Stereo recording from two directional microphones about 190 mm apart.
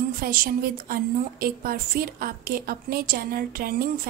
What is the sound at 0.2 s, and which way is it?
A woman's voice, 50° right (ahead or behind).